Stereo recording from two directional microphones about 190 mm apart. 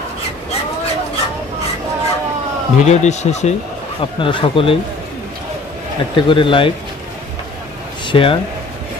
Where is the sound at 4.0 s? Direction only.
25° left (ahead or behind).